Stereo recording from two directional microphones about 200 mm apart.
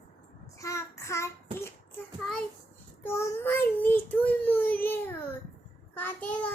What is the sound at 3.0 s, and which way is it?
Child singing, 15° left (ahead or behind).